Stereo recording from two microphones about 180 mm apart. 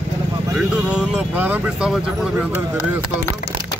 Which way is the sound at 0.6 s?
5° right (ahead or behind).